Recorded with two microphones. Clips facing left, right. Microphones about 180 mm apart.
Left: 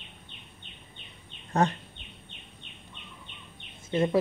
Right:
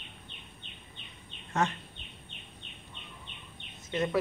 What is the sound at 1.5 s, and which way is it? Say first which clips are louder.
Speech: left 5 dB; 35° left (ahead or behind).